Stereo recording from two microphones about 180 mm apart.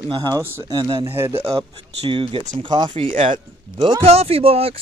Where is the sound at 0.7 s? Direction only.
25° right (ahead or behind).